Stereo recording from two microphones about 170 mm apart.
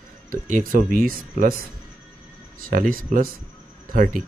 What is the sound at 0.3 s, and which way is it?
Speech, 50° right (ahead or behind).